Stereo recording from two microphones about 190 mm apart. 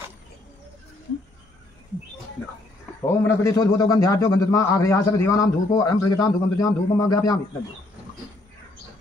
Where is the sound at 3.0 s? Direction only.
15° left (ahead or behind).